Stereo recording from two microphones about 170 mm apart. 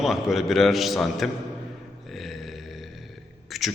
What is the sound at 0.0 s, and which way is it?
A man's voice, centre (ahead or behind).